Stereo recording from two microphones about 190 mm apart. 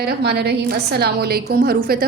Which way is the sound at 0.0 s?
60° right (ahead or behind).